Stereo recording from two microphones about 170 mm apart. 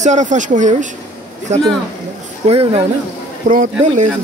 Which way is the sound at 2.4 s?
35° right (ahead or behind).